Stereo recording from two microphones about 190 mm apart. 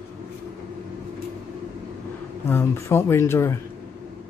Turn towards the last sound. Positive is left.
turn(degrees=15)  # may be behind; listen again after turning